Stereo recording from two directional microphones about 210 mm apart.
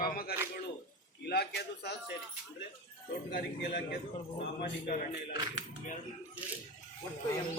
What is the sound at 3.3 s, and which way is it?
Speech, 50° left (ahead or behind).